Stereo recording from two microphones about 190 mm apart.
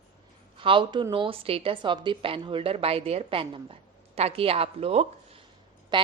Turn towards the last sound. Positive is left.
turn(degrees=-25)  # may be behind; listen again after turning